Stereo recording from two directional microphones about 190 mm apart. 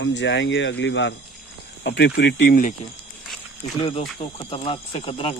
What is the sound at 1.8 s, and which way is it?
Speech, 60° left (ahead or behind).